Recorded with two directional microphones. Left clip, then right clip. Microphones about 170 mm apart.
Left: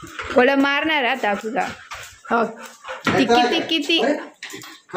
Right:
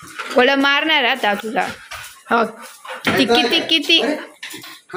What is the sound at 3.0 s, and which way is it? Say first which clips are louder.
Speech: right 1 dB; centre (ahead or behind).